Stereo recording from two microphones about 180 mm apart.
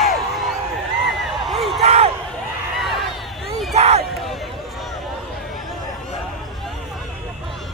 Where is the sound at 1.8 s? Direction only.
35° right (ahead or behind).